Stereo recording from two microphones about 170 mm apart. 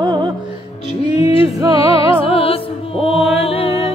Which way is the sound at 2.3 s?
35° left (ahead or behind).